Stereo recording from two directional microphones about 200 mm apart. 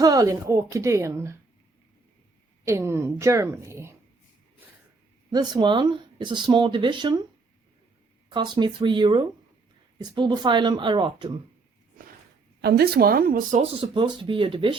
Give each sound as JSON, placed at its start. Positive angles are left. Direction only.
{"t": 0.0, "sound": "speech", "side_deg": -15}
{"t": 2.6, "sound": "speech", "side_deg": -15}
{"t": 5.3, "sound": "speech", "side_deg": -20}
{"t": 8.3, "sound": "speech", "side_deg": -25}
{"t": 12.6, "sound": "speech", "side_deg": -50}
{"t": 13.6, "sound": "speech", "side_deg": -25}